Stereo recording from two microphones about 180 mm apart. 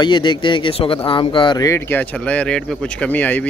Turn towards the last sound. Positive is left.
turn(degrees=10)  # may be behind; listen again after turning